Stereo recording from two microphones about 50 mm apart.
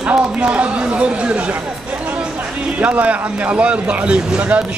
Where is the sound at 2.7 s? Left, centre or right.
Right.